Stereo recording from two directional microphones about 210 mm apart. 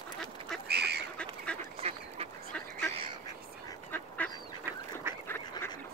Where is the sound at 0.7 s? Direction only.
50° right (ahead or behind).